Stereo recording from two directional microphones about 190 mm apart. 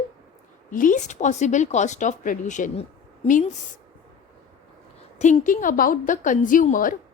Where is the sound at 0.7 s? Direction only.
45° left (ahead or behind).